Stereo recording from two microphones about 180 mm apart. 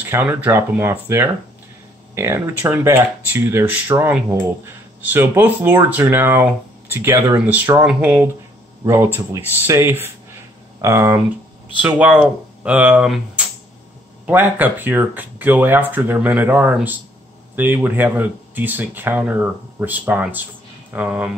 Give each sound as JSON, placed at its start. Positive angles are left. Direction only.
{"t": 0.0, "sound": "speech", "side_deg": -10}